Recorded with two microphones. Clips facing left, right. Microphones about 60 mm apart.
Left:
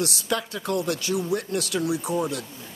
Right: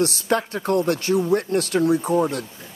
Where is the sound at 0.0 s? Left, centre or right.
Right.